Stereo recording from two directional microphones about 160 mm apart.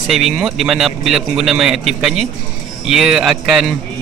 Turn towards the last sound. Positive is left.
turn(degrees=-5)  # may be behind; listen again after turning